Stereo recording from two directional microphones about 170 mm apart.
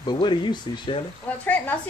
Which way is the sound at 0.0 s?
25° left (ahead or behind).